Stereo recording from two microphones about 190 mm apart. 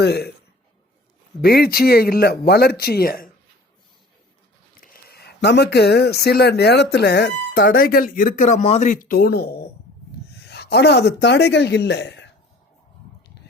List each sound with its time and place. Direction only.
0.0 s speech: 60° left (ahead or behind)
1.4 s speech: 55° left (ahead or behind)
4.8 s speech: 55° left (ahead or behind)
10.5 s speech: 60° left (ahead or behind)